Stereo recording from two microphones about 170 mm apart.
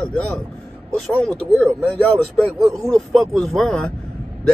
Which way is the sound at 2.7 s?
20° right (ahead or behind).